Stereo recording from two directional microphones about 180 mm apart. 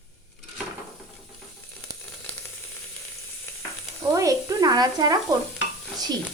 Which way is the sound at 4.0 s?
20° right (ahead or behind).